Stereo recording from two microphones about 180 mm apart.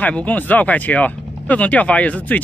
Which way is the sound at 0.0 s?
10° left (ahead or behind).